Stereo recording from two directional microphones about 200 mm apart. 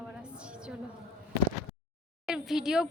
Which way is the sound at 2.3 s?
Centre (ahead or behind).